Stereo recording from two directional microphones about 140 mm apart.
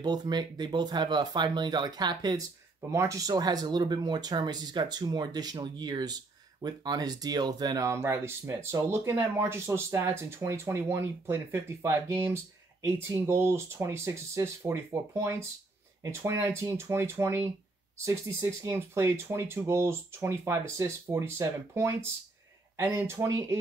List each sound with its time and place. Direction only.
0.0 s speech: 30° right (ahead or behind)